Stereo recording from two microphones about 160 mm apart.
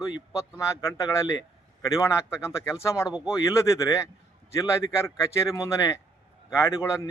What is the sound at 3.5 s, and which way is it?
A man's voice, 15° left (ahead or behind).